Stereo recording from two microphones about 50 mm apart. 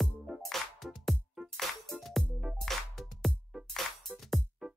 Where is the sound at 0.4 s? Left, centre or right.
Centre.